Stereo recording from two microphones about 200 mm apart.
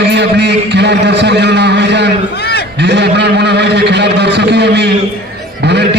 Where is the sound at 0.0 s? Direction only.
60° right (ahead or behind).